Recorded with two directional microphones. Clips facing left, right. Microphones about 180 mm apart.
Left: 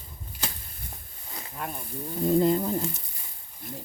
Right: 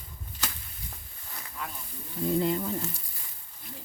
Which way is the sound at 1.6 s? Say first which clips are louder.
Left 6 dB; 50° left (ahead or behind).